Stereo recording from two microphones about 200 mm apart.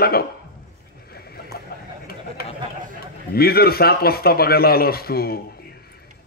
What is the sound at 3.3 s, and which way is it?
Speech, 50° left (ahead or behind).